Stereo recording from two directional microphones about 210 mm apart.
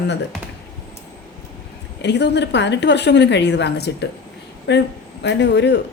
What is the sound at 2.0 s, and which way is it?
Speech, 55° left (ahead or behind).